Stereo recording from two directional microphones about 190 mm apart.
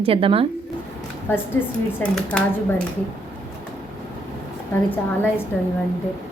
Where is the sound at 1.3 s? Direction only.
10° left (ahead or behind).